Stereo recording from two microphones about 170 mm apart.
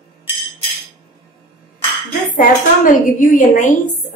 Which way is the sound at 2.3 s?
50° left (ahead or behind).